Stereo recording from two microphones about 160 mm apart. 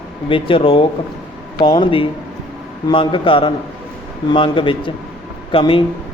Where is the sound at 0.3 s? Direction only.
35° left (ahead or behind).